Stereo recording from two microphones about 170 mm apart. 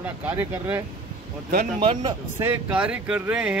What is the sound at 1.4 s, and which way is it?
Speech, 55° right (ahead or behind).